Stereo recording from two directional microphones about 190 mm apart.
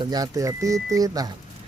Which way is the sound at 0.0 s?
20° right (ahead or behind).